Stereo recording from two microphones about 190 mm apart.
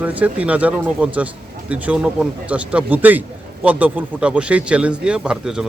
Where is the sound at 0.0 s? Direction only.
10° right (ahead or behind).